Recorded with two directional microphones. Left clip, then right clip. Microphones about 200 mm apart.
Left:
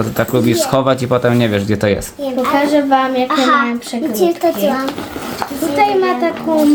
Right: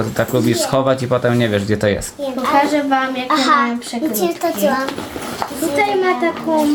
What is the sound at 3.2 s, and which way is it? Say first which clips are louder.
A child's voice: left 1 dB; 5° right (ahead or behind).